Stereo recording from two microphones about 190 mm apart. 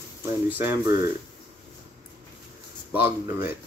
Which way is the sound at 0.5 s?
10° right (ahead or behind).